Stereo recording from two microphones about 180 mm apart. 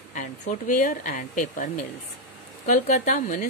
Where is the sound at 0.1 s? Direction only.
45° left (ahead or behind).